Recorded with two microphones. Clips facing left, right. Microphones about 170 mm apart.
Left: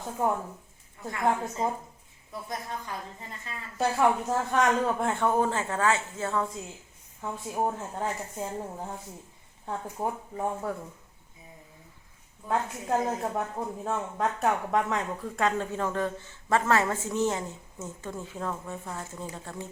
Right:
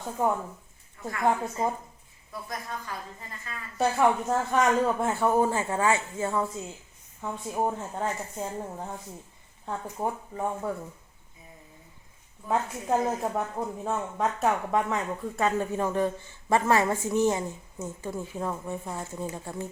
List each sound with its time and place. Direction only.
0.0 s a woman's voice: centre (ahead or behind)
1.5 s a woman's voice: centre (ahead or behind)
2.5 s speech: 25° left (ahead or behind)
3.8 s speech: centre (ahead or behind)
7.2 s a woman's voice: centre (ahead or behind)
10.0 s a woman's voice: centre (ahead or behind)
12.5 s speech: 5° right (ahead or behind)